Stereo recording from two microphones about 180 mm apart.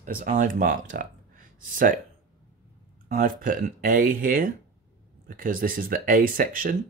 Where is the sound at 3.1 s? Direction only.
50° right (ahead or behind).